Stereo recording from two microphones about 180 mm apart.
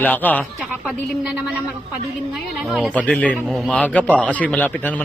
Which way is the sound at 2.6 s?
Centre (ahead or behind).